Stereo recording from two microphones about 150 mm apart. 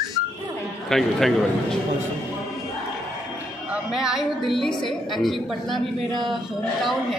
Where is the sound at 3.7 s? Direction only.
5° right (ahead or behind).